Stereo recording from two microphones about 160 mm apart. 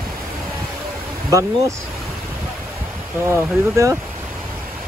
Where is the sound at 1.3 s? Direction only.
20° right (ahead or behind).